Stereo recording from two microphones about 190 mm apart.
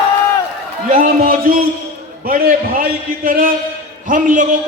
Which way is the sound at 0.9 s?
45° right (ahead or behind).